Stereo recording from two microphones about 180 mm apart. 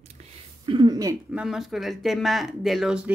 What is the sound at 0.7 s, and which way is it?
Speech, 25° right (ahead or behind).